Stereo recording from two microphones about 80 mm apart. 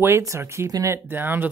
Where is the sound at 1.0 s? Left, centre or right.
Right.